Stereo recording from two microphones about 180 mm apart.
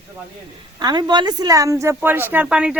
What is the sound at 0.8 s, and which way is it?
A woman's voice, 25° right (ahead or behind).